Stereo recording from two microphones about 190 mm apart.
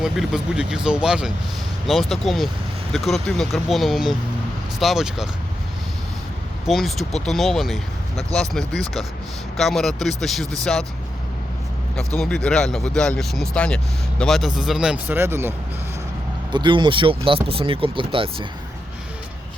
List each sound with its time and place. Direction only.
0.0 s speech: 5° right (ahead or behind)
6.7 s speech: centre (ahead or behind)
11.9 s speech: 5° left (ahead or behind); by 15.5 s 10° right (ahead or behind)
16.5 s speech: 25° right (ahead or behind)